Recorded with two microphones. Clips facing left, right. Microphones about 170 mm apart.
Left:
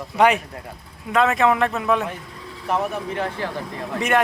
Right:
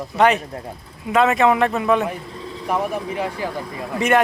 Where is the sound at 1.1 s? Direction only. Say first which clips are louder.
Right 2 dB; centre (ahead or behind).